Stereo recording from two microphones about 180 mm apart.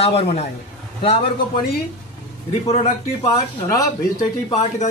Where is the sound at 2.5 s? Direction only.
35° left (ahead or behind).